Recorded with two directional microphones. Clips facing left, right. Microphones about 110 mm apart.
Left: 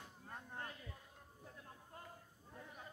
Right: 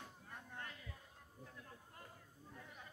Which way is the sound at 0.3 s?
30° left (ahead or behind).